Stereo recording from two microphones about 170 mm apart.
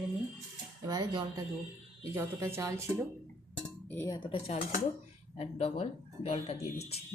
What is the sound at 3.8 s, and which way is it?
Speech, 15° left (ahead or behind).